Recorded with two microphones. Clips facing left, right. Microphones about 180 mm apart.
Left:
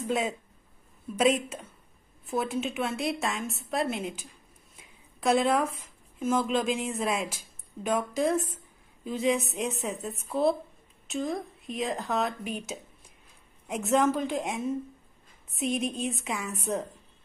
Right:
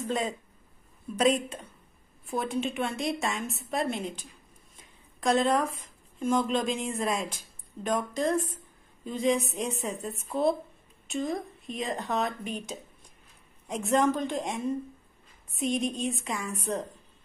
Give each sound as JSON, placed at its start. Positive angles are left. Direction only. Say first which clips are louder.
{"t": 0.0, "sound": "a woman's voice", "louder": "left 1 dB", "side_deg": 5}